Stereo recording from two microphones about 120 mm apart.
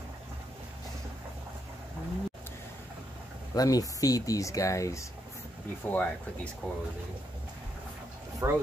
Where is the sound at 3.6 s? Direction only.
30° left (ahead or behind).